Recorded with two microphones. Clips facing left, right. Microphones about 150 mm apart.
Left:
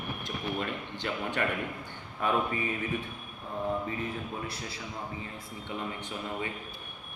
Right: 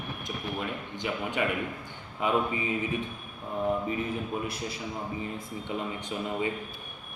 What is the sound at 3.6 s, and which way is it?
A man's voice, 20° right (ahead or behind).